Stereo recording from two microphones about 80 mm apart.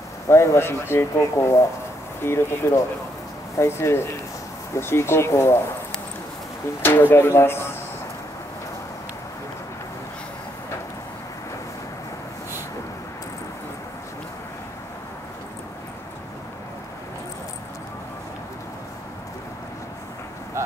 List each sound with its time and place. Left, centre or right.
0.3 s speech: left
6.8 s speech: left
20.6 s vehicle: right